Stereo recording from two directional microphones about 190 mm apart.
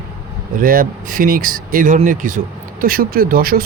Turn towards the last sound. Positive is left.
turn(degrees=-50)  # may be behind; listen again after turning